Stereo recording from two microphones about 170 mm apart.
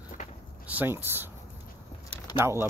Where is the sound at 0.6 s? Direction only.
10° right (ahead or behind).